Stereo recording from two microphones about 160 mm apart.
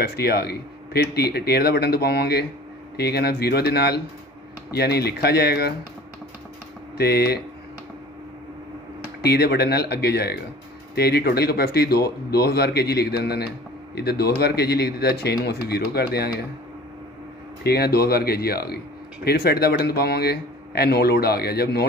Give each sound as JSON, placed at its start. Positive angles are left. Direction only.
{"t": 0.0, "sound": "speech", "side_deg": 75}
{"t": 7.0, "sound": "speech", "side_deg": 80}
{"t": 9.2, "sound": "speech", "side_deg": 85}
{"t": 17.6, "sound": "speech", "side_deg": 80}